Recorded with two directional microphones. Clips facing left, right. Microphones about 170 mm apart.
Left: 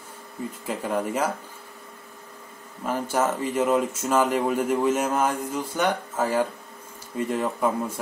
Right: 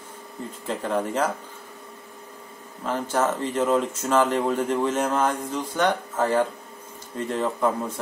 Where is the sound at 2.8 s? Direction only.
10° left (ahead or behind).